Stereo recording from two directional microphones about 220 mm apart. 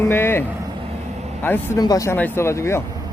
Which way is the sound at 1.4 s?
10° left (ahead or behind).